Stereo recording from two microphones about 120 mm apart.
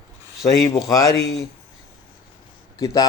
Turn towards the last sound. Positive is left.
turn(degrees=30)  # may be behind; listen again after turning